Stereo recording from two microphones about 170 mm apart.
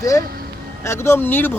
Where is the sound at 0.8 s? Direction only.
15° left (ahead or behind).